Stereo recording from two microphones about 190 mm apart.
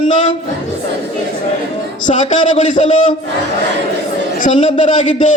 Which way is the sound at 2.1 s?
40° left (ahead or behind).